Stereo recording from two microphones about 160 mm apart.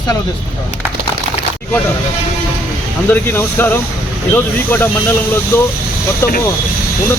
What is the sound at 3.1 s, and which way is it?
Speech, 15° left (ahead or behind).